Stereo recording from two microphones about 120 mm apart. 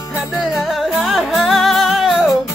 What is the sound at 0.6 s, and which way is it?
Music, centre (ahead or behind).